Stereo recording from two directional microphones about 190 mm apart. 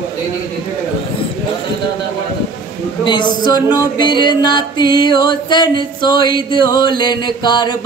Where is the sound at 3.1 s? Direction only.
25° left (ahead or behind).